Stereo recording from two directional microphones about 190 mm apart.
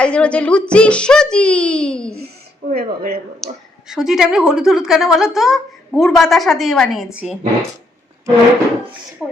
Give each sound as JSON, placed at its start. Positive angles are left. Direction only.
{"t": 0.0, "sound": "speech", "side_deg": 5}
{"t": 2.7, "sound": "speech", "side_deg": -50}
{"t": 3.4, "sound": "speech", "side_deg": 0}
{"t": 9.2, "sound": "speech", "side_deg": 0}